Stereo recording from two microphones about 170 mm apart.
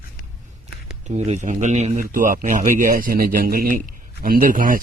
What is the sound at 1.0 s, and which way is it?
Speech, 45° right (ahead or behind).